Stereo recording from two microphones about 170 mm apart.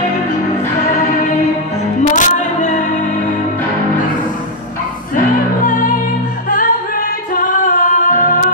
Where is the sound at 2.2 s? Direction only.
45° left (ahead or behind).